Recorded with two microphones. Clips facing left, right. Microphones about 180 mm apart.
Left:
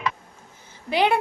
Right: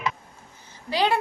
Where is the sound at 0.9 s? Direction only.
20° left (ahead or behind).